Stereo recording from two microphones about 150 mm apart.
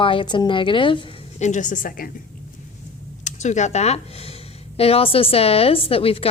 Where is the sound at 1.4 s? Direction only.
55° left (ahead or behind).